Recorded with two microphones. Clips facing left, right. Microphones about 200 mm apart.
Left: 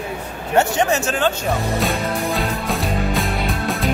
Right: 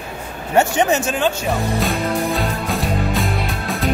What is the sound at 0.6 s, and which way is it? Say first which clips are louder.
Speech: right 2 dB; 15° right (ahead or behind).